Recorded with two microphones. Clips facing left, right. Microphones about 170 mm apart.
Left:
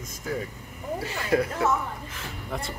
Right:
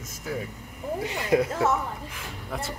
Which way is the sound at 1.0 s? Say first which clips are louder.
Right 2 dB; 20° right (ahead or behind).